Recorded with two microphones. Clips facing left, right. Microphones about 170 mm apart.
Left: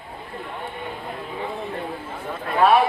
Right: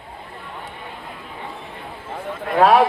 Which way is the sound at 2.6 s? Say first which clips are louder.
Right 3 dB; 90° right.